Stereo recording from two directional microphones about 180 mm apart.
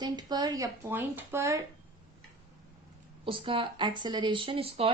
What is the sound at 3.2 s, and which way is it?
A woman's voice, 30° right (ahead or behind).